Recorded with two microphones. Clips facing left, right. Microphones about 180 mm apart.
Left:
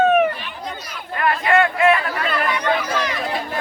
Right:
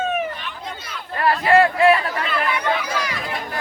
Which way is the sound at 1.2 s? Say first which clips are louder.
Right 2 dB; 35° right (ahead or behind).